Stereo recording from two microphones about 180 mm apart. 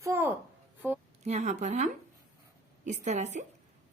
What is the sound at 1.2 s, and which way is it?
A woman's voice, 40° right (ahead or behind).